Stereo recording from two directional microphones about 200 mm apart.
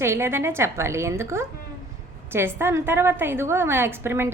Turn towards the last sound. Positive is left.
turn(degrees=-10)  # may be behind; listen again after turning